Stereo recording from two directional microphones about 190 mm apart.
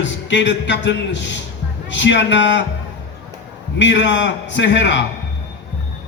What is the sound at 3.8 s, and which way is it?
A man's voice, 70° left (ahead or behind).